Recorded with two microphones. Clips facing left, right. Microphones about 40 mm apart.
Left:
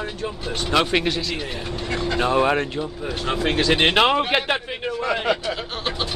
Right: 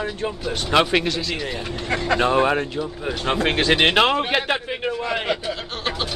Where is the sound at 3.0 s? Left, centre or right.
Right.